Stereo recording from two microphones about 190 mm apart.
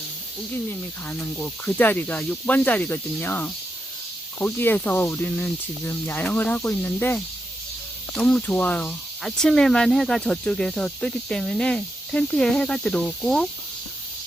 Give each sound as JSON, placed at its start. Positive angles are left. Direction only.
{"t": 1.1, "sound": "speech", "side_deg": 10}